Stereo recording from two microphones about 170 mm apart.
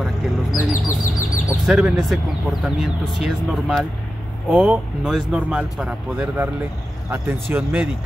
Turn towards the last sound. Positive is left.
turn(degrees=-10)  # may be behind; listen again after turning